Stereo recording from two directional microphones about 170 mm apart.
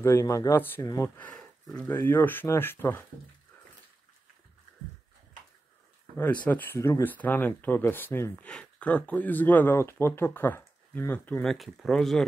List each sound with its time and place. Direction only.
0.0 s speech: 15° left (ahead or behind)
1.1 s speech: 5° left (ahead or behind)
6.1 s speech: 10° left (ahead or behind)
11.4 s speech: centre (ahead or behind)